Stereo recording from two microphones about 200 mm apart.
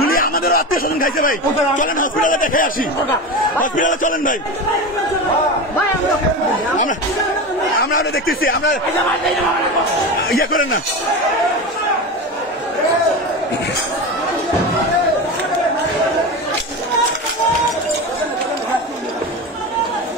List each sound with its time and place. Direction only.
0.0 s a sound: 45° left (ahead or behind)
1.8 s a man's voice: 40° left (ahead or behind)
7.8 s a man's voice: 55° left (ahead or behind)
10.3 s a man's voice: 45° left (ahead or behind)